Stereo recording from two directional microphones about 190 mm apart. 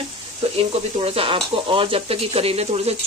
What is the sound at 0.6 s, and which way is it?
Speech, 30° right (ahead or behind).